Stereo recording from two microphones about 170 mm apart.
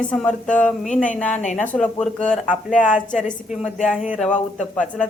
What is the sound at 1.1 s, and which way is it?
Speech, 10° left (ahead or behind).